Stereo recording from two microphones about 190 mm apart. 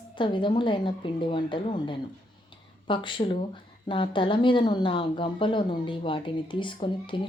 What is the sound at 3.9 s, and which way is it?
Speech, 25° left (ahead or behind).